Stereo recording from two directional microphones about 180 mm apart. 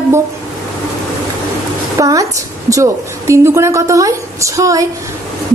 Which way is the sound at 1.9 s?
20° right (ahead or behind).